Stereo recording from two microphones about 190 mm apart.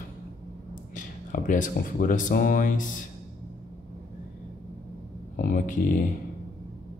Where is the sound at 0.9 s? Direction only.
40° left (ahead or behind).